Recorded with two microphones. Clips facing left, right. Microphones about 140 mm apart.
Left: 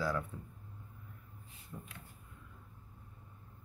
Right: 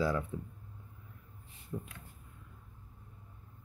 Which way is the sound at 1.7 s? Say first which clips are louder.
Right 8 dB; 20° right (ahead or behind).